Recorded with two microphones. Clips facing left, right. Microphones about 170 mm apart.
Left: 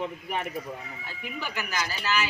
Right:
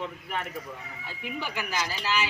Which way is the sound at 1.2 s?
25° right (ahead or behind).